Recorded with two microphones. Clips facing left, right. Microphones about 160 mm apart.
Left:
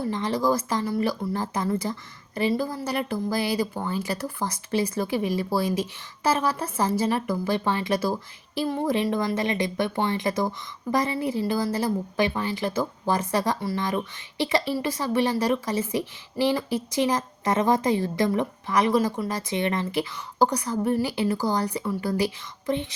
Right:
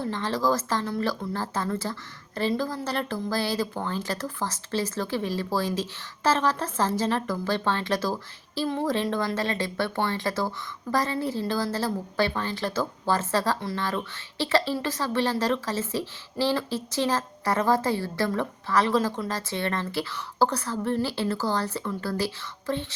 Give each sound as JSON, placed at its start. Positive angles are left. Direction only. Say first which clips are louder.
{"t": 0.0, "sound": "a woman's voice", "louder": "left 2 dB", "side_deg": 15}